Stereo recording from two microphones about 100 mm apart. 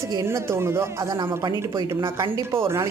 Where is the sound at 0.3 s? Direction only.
25° right (ahead or behind).